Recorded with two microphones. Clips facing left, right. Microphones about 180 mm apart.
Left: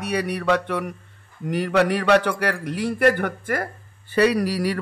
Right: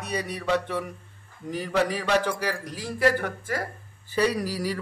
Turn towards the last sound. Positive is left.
turn(degrees=70)  # may be behind; listen again after turning